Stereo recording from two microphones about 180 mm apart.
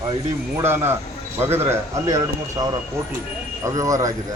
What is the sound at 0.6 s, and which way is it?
Speech, 15° right (ahead or behind).